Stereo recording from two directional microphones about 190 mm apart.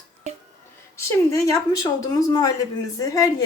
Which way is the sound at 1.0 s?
15° left (ahead or behind).